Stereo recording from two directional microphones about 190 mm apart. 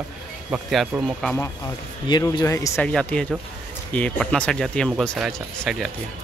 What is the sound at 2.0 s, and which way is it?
Speech, 25° left (ahead or behind).